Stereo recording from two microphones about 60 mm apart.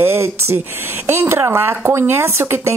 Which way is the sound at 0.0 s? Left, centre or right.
Right.